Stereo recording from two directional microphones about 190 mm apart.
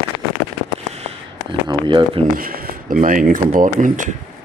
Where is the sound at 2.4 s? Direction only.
50° right (ahead or behind).